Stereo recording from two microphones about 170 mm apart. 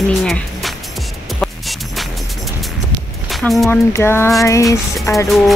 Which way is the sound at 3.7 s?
15° left (ahead or behind).